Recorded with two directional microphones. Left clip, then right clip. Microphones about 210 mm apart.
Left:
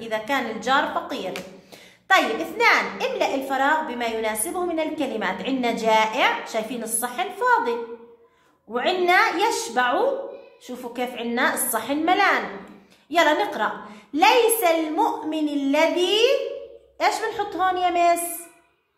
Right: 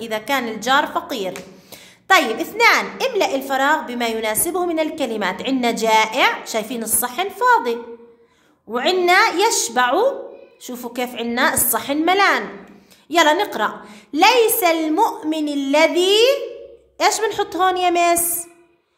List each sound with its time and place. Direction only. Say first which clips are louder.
0.0 s a woman's voice: right 3 dB; 50° right (ahead or behind)
8.7 s a woman's voice: right 4 dB; 50° right (ahead or behind)